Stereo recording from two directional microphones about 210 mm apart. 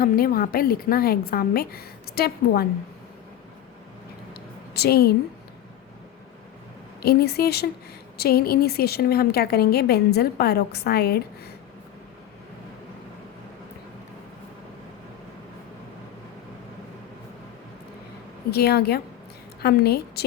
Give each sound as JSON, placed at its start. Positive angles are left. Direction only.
{"t": 0.0, "sound": "a woman's voice", "side_deg": 45}
{"t": 4.4, "sound": "a sound", "side_deg": 50}
{"t": 7.0, "sound": "a woman's voice", "side_deg": 50}
{"t": 18.5, "sound": "a woman's voice", "side_deg": 50}